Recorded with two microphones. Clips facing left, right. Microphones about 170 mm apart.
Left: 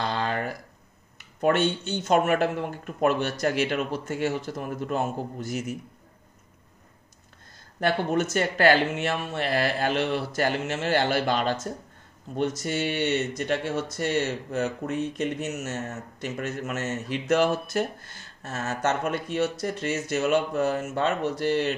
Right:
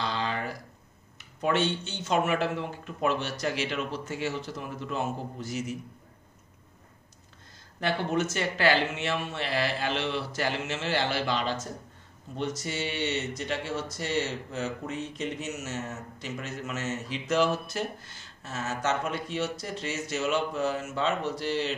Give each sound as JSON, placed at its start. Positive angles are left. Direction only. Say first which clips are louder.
{"t": 0.0, "sound": "a sound", "louder": "left 3 dB", "side_deg": 50}
{"t": 1.4, "sound": "speech", "louder": "left 4 dB", "side_deg": 50}
{"t": 7.8, "sound": "speech", "louder": "left 3 dB", "side_deg": 50}